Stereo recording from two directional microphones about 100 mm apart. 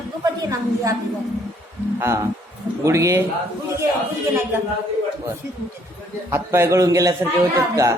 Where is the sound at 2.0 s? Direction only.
30° right (ahead or behind).